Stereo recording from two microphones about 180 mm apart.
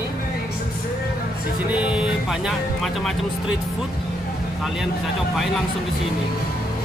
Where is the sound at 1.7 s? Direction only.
5° right (ahead or behind).